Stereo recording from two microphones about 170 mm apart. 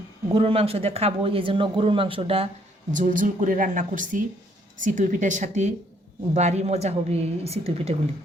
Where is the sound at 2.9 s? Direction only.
50° right (ahead or behind).